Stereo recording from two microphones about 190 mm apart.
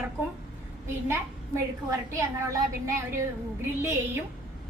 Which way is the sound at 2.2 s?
15° right (ahead or behind).